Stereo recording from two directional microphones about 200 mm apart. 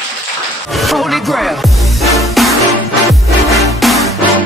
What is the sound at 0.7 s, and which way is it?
Music, centre (ahead or behind).